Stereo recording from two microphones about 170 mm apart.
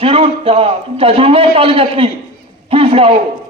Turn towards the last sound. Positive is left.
turn(degrees=-35)  # may be behind; listen again after turning